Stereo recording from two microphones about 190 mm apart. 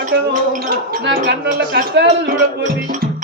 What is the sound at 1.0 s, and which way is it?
Speech, 60° right (ahead or behind).